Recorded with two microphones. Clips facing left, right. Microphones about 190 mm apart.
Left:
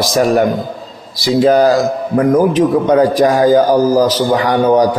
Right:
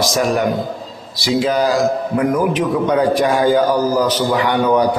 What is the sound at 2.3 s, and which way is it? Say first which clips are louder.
A man's voice: left 6 dB; 30° left (ahead or behind).